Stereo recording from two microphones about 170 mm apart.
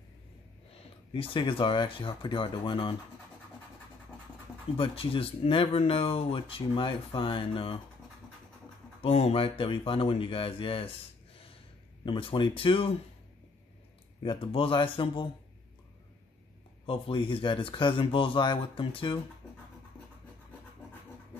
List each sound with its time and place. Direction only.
1.1 s speech: 30° left (ahead or behind)
4.7 s speech: 30° left (ahead or behind)
9.0 s speech: 35° left (ahead or behind)
12.0 s speech: 30° left (ahead or behind)
14.2 s speech: 30° left (ahead or behind)
16.8 s speech: 30° left (ahead or behind)